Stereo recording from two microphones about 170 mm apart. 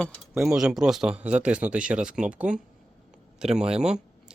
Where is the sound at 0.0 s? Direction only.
Centre (ahead or behind).